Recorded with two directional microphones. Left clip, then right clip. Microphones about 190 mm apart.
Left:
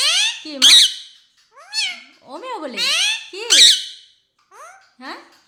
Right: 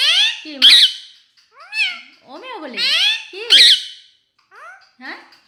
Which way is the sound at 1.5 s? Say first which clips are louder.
Right 3 dB; 20° left (ahead or behind).